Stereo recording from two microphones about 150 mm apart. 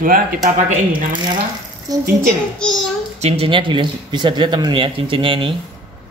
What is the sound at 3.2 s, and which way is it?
A man's voice, 45° right (ahead or behind).